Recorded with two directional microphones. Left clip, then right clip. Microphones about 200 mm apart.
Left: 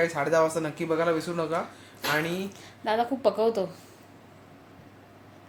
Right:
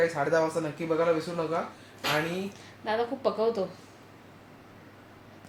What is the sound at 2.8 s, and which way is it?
Speech, 45° left (ahead or behind).